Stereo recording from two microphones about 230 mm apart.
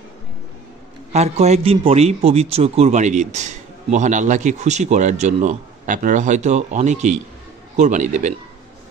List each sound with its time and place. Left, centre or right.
1.1 s a man's voice: right